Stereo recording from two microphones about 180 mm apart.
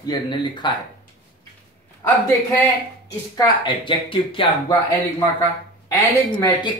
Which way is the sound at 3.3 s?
25° left (ahead or behind).